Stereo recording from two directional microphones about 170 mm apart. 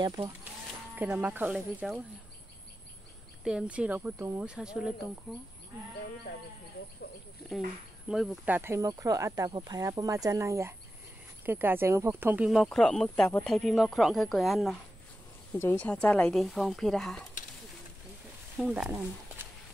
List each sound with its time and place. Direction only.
0.0 s speech: 25° right (ahead or behind)
0.9 s speech: 10° right (ahead or behind)
3.4 s speech: 5° right (ahead or behind)
7.5 s speech: centre (ahead or behind)
8.5 s speech: 15° right (ahead or behind)
12.4 s speech: centre (ahead or behind)
18.6 s speech: 5° right (ahead or behind)